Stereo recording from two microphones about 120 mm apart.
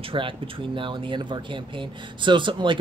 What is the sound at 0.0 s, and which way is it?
Speech, 45° right (ahead or behind).